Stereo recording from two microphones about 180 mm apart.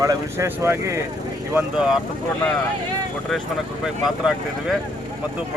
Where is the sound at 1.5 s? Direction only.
5° right (ahead or behind).